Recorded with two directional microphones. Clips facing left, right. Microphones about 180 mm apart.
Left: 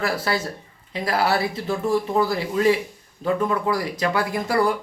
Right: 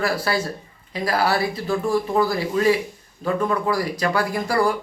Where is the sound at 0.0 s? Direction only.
25° left (ahead or behind).